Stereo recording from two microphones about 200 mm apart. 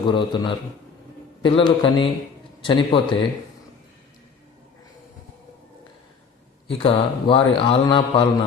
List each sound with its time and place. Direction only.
0.1 s a man's voice: 25° left (ahead or behind)
6.7 s a man's voice: 25° left (ahead or behind)